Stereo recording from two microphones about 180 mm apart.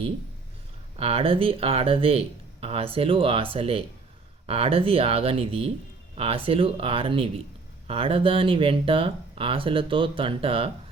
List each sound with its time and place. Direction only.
0.9 s speech: 35° right (ahead or behind)